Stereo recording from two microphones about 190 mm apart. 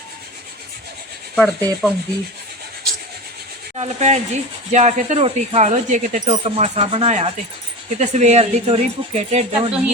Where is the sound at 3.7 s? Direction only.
35° right (ahead or behind).